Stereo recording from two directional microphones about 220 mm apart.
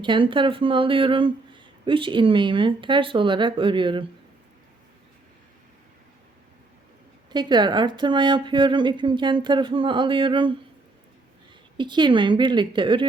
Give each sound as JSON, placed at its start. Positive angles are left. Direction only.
{"t": 0.0, "sound": "speech", "side_deg": -20}
{"t": 7.3, "sound": "speech", "side_deg": -20}
{"t": 11.8, "sound": "speech", "side_deg": -20}